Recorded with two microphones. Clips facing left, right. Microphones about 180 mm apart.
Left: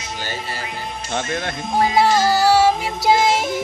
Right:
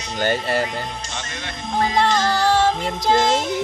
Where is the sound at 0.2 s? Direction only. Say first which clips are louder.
Right 11 dB; 55° right (ahead or behind).